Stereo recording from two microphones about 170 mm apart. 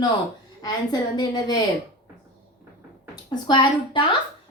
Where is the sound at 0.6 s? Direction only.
25° left (ahead or behind).